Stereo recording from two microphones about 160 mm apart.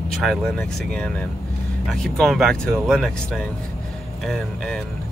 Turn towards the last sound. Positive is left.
turn(degrees=0)  # may be behind; listen again after turning